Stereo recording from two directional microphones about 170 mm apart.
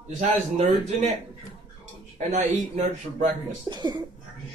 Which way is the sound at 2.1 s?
45° right (ahead or behind).